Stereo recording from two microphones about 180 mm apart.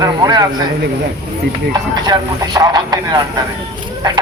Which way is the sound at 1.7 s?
20° right (ahead or behind).